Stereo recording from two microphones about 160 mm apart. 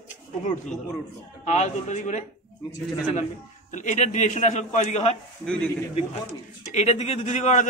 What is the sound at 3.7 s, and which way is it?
Speech, 50° left (ahead or behind).